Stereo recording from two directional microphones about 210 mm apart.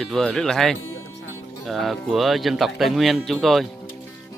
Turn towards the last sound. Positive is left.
turn(degrees=0)  # may be behind; listen again after turning